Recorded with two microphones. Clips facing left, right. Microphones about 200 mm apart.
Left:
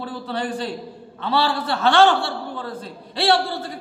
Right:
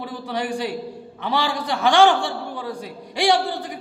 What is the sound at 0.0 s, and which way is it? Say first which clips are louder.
A man's voice: even; 15° right (ahead or behind).